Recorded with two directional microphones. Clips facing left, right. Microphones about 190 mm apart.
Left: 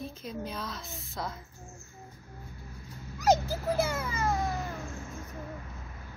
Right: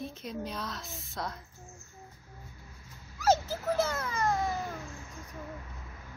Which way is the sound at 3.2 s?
15° left (ahead or behind).